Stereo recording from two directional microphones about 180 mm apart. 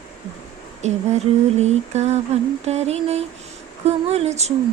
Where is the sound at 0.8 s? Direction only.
40° right (ahead or behind).